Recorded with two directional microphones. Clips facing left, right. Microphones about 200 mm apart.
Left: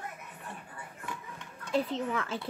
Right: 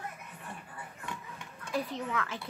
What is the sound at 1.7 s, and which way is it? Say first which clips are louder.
Speech: left 4 dB; 25° left (ahead or behind).